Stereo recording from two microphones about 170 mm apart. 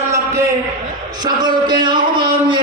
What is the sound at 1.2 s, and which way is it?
Speech, 25° right (ahead or behind).